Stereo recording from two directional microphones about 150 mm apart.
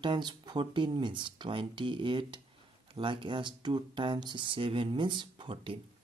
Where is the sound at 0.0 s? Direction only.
30° right (ahead or behind).